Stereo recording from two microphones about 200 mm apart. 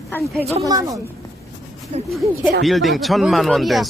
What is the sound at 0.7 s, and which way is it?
A woman's voice, 15° right (ahead or behind).